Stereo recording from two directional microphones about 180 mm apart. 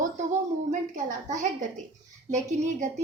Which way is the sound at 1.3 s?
40° right (ahead or behind).